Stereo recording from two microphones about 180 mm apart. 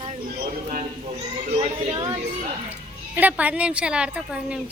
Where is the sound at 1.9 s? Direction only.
25° right (ahead or behind).